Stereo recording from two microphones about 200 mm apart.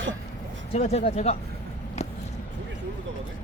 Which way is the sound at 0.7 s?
30° left (ahead or behind).